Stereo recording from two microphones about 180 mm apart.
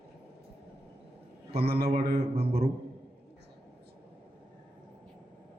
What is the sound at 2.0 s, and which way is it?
Music, 60° right (ahead or behind).